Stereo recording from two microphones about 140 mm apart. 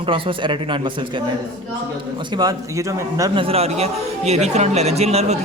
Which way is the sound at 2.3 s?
25° right (ahead or behind).